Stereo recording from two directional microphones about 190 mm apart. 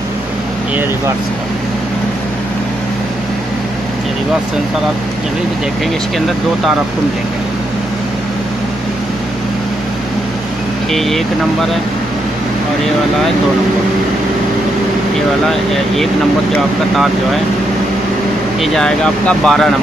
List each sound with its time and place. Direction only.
6.1 s speech: centre (ahead or behind)
10.9 s speech: centre (ahead or behind)
16.9 s speech: centre (ahead or behind)
18.6 s speech: 5° left (ahead or behind)